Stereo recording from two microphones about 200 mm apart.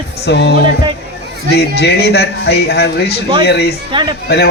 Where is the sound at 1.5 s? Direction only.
55° left (ahead or behind).